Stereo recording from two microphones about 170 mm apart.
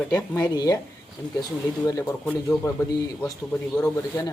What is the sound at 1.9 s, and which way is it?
Speech, 20° left (ahead or behind).